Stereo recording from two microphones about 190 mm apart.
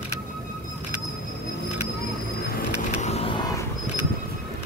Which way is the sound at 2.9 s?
35° left (ahead or behind).